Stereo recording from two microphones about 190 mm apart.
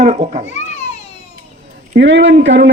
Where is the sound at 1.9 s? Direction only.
70° right (ahead or behind).